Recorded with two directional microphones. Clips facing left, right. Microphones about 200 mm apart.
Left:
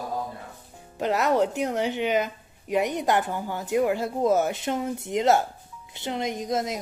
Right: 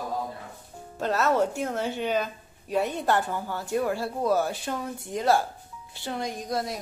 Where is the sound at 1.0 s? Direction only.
15° left (ahead or behind).